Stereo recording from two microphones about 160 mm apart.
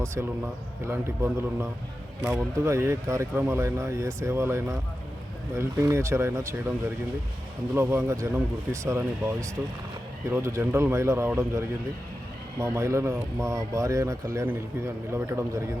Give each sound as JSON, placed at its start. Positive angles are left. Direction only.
{"t": 0.0, "sound": "speech", "side_deg": -15}
{"t": 7.8, "sound": "speech", "side_deg": -15}
{"t": 12.5, "sound": "speech", "side_deg": -15}